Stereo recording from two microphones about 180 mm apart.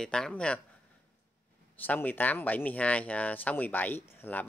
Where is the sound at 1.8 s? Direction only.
10° left (ahead or behind).